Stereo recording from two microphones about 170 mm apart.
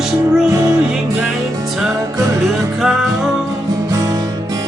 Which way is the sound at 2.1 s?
20° right (ahead or behind).